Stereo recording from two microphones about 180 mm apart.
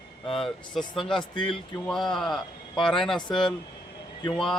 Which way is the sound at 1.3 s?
25° left (ahead or behind).